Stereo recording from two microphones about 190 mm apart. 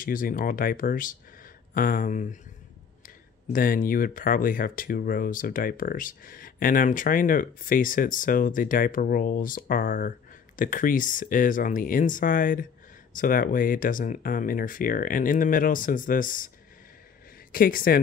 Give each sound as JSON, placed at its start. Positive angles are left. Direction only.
{"t": 0.0, "sound": "speech", "side_deg": 45}
{"t": 3.5, "sound": "speech", "side_deg": 45}
{"t": 17.5, "sound": "speech", "side_deg": 50}